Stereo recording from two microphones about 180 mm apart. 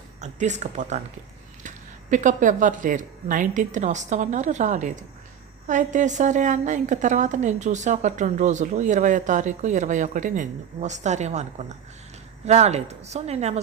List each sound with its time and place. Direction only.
0.2 s a woman's voice: 40° right (ahead or behind)